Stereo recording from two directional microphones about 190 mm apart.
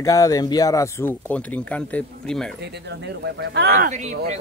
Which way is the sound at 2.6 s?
60° right (ahead or behind).